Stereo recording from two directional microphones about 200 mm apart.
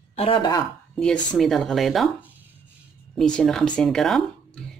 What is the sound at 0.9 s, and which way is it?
Speech, 5° left (ahead or behind).